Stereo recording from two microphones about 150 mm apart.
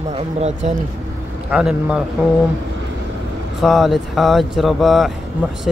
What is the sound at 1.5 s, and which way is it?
Speech, 5° right (ahead or behind).